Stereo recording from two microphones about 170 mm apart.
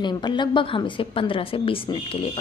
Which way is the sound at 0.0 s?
25° left (ahead or behind).